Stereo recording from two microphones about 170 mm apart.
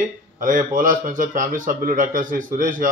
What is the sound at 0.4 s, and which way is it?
A man's voice, 50° right (ahead or behind).